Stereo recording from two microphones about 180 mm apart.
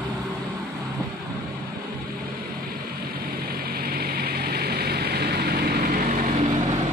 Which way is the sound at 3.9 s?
60° right (ahead or behind).